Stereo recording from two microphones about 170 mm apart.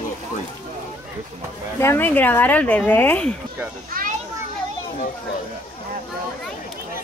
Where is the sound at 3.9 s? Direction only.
60° right (ahead or behind).